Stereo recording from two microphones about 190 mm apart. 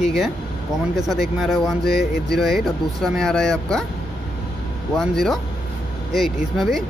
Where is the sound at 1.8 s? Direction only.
55° left (ahead or behind).